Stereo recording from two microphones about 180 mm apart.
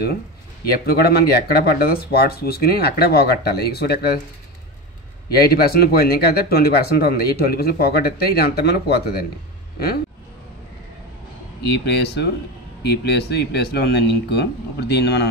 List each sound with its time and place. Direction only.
0.8 s speech: 60° left (ahead or behind)
5.3 s speech: 60° left (ahead or behind)
11.6 s speech: 65° left (ahead or behind)